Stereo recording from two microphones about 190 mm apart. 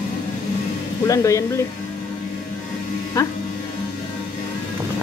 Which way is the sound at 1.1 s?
15° left (ahead or behind).